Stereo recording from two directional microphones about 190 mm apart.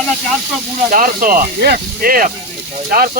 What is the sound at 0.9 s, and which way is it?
Speech, 45° right (ahead or behind).